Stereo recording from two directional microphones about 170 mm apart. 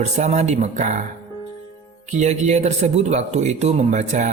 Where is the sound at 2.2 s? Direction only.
40° right (ahead or behind).